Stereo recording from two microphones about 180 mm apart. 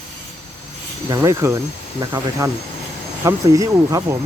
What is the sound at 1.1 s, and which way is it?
Speech, 20° right (ahead or behind).